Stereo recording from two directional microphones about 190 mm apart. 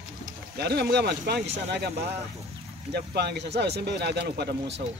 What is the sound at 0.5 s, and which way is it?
Speech, 55° right (ahead or behind).